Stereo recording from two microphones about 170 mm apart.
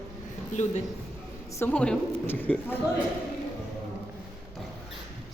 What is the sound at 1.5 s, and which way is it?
A woman's voice, 10° left (ahead or behind).